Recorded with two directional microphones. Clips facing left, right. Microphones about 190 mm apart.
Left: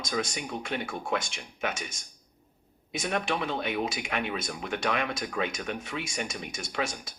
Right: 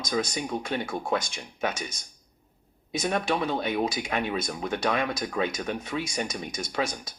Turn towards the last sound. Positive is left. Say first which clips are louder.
# right 3 dB
turn(degrees=-40)  # may be behind; listen again after turning